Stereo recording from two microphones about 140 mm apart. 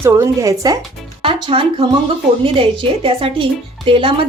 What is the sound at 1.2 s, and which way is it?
A woman's voice, 40° right (ahead or behind).